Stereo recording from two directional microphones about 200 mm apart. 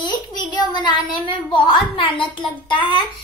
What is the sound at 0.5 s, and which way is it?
A woman's voice, 20° left (ahead or behind).